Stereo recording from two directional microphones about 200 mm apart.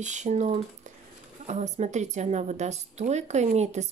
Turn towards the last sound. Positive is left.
turn(degrees=-35)  # may be behind; listen again after turning